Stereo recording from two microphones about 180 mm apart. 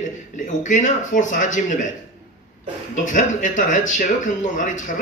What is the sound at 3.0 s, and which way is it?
A man's voice, 45° left (ahead or behind).